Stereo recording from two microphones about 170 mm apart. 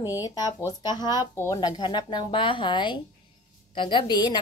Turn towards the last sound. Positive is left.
turn(degrees=25)  # may be behind; listen again after turning